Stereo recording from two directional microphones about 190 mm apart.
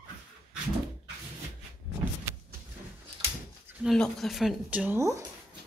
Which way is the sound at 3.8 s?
Centre (ahead or behind).